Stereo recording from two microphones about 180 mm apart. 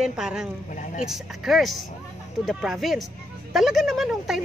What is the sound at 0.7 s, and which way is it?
Speech, 45° left (ahead or behind).